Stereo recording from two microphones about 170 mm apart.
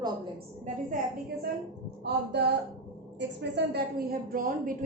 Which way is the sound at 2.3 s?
75° right (ahead or behind).